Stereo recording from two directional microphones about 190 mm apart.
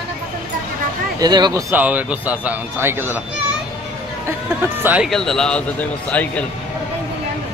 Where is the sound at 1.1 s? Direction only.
20° right (ahead or behind).